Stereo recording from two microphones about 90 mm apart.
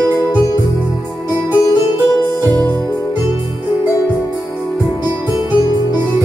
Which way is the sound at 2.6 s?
15° left (ahead or behind).